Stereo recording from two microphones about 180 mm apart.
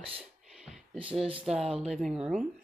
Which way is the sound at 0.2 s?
Centre (ahead or behind).